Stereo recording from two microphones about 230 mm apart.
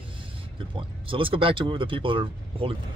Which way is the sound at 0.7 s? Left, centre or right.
Right.